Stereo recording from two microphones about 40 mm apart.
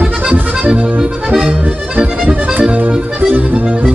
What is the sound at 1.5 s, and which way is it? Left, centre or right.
Accordion, right.